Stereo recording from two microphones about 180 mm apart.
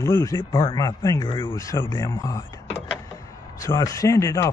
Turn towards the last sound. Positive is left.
turn(degrees=15)  # may be behind; listen again after turning